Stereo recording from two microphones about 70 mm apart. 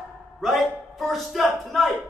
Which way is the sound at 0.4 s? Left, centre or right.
Centre.